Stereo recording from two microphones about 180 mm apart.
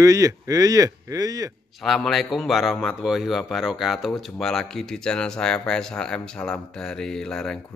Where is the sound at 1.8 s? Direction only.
Centre (ahead or behind).